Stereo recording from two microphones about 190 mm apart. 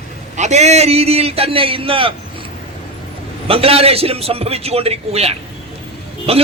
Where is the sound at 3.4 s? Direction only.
30° right (ahead or behind).